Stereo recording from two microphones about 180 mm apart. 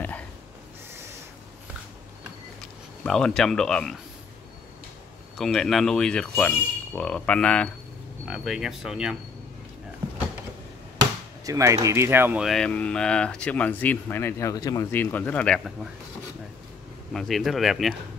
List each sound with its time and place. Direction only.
3.0 s speech: 5° left (ahead or behind)
5.4 s speech: centre (ahead or behind)
11.4 s speech: 15° right (ahead or behind)
12.4 s speech: 5° left (ahead or behind)
17.1 s speech: centre (ahead or behind)